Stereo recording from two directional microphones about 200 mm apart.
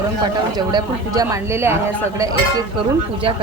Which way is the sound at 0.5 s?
20° right (ahead or behind).